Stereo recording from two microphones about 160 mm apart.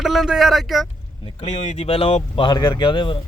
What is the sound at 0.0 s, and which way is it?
Speech, centre (ahead or behind).